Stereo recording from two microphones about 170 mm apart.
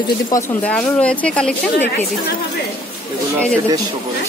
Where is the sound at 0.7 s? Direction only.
5° left (ahead or behind).